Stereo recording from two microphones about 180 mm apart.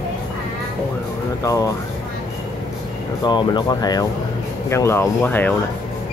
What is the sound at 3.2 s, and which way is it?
Speech, 25° left (ahead or behind).